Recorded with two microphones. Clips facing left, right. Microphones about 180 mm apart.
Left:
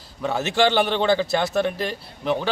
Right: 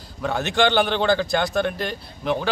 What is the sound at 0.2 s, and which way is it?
A man's voice, 5° left (ahead or behind).